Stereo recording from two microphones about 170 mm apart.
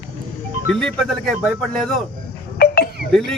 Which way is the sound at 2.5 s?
65° left (ahead or behind).